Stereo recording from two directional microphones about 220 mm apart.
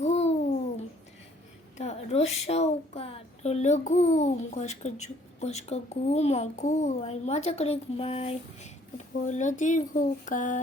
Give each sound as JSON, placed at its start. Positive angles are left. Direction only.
{"t": 0.0, "sound": "babbling", "side_deg": 30}
{"t": 1.8, "sound": "a woman's voice", "side_deg": 30}